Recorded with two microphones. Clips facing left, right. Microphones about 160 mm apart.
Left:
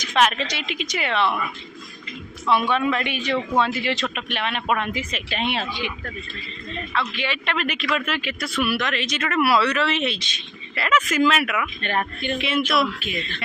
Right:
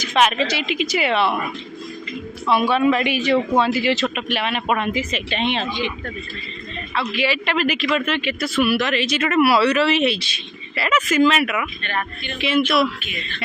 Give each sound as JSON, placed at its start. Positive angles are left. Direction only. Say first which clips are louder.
{"t": 0.0, "sound": "speech", "louder": "right 2 dB", "side_deg": -5}
{"t": 2.5, "sound": "speech", "louder": "right 4 dB", "side_deg": -5}
{"t": 6.9, "sound": "speech", "louder": "right 5 dB", "side_deg": -5}
{"t": 11.8, "sound": "speech", "louder": "left 2 dB", "side_deg": 40}
{"t": 12.4, "sound": "speech", "louder": "right 5 dB", "side_deg": 0}